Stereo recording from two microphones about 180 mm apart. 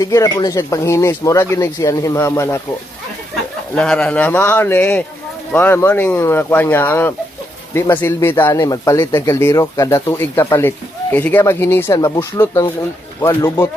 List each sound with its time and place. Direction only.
0.0 s speech: 20° left (ahead or behind)
3.8 s speech: 5° left (ahead or behind)